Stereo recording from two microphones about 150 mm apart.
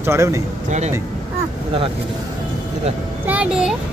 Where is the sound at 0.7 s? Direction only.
50° right (ahead or behind).